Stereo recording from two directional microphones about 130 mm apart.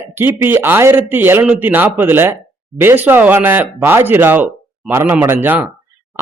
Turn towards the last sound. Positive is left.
turn(degrees=-15)  # may be behind; listen again after turning